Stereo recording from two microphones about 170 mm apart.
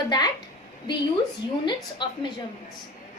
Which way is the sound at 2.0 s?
25° left (ahead or behind).